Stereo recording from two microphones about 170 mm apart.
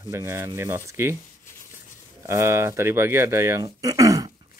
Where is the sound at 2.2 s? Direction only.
15° right (ahead or behind).